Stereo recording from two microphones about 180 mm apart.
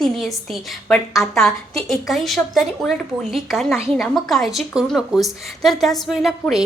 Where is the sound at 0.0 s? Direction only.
Centre (ahead or behind).